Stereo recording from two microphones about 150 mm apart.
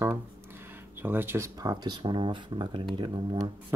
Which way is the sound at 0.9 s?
15° right (ahead or behind).